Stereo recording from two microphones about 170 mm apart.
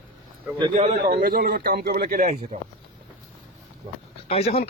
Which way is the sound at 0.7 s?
45° right (ahead or behind).